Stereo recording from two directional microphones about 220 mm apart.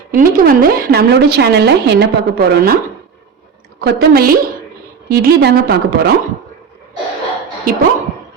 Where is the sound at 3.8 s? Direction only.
45° right (ahead or behind).